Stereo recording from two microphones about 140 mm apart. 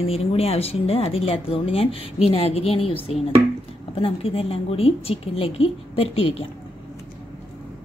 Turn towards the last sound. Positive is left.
turn(degrees=45)  # may be behind; listen again after turning